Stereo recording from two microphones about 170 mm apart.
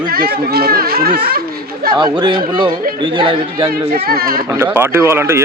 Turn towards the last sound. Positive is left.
turn(degrees=-15)  # may be behind; listen again after turning